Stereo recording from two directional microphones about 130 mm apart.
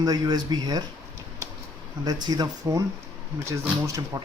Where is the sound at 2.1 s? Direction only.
30° right (ahead or behind).